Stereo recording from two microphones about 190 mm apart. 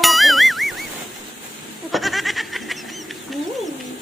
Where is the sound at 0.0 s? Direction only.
Centre (ahead or behind).